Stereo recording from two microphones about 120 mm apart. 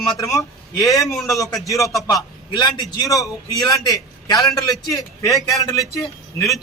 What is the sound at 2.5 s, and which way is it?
A man's voice, 40° left (ahead or behind).